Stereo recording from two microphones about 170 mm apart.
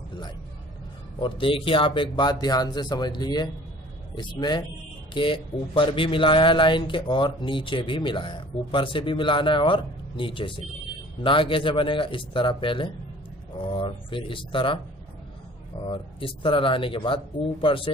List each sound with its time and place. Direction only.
1.2 s speech: 30° left (ahead or behind)
15.8 s speech: 30° left (ahead or behind)